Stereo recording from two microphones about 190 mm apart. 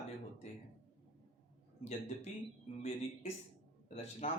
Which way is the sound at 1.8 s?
35° left (ahead or behind).